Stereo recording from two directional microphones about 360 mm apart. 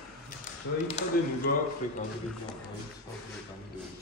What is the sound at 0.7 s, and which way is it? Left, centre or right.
Speech, left.